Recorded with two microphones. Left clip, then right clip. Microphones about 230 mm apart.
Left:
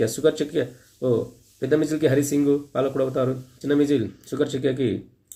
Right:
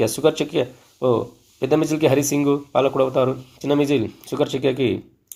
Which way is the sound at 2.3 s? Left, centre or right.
Right.